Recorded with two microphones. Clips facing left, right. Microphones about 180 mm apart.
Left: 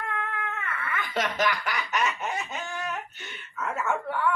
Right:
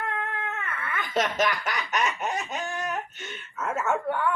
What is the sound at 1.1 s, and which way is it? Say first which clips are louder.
Snicker: right 2 dB; 20° right (ahead or behind).